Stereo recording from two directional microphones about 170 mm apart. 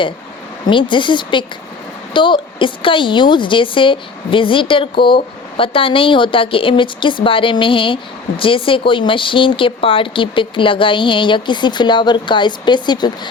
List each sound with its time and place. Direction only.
0.7 s a woman's voice: 30° left (ahead or behind)